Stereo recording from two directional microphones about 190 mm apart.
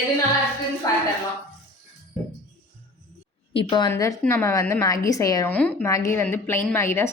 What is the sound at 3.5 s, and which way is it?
Speech, 25° left (ahead or behind).